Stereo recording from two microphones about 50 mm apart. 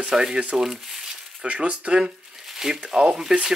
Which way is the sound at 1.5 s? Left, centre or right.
Right.